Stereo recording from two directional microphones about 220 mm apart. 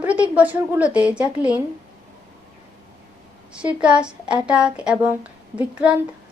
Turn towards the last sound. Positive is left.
turn(degrees=-5)  # may be behind; listen again after turning